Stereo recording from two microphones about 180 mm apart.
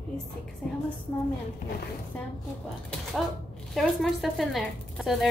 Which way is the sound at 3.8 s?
Centre (ahead or behind).